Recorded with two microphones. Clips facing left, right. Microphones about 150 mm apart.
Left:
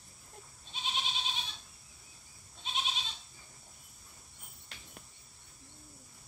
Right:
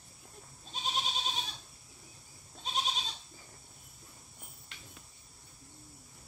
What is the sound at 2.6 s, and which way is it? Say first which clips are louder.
Goat: right 3 dB; 40° right (ahead or behind).